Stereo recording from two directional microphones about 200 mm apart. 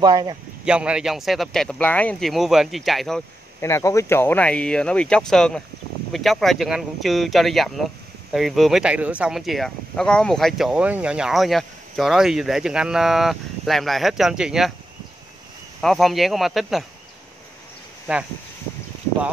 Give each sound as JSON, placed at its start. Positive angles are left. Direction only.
{"t": 0.0, "sound": "speech", "side_deg": -20}
{"t": 0.7, "sound": "speech", "side_deg": -5}
{"t": 3.6, "sound": "speech", "side_deg": 15}
{"t": 15.8, "sound": "speech", "side_deg": 0}